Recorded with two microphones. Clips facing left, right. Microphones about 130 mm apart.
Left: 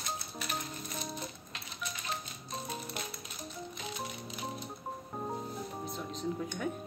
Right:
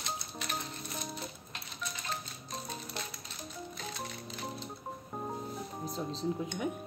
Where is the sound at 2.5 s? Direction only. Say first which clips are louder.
Left 2 dB; 5° left (ahead or behind).